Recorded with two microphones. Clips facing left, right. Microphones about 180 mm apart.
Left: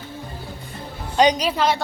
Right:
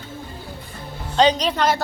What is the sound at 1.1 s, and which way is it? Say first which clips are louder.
Speech: even; 10° left (ahead or behind).